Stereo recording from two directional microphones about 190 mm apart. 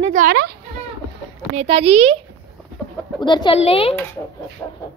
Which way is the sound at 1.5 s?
35° right (ahead or behind).